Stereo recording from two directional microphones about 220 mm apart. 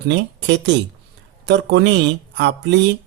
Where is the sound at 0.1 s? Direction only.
50° right (ahead or behind).